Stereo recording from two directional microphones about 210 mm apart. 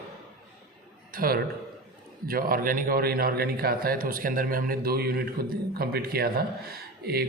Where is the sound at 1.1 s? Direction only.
45° right (ahead or behind).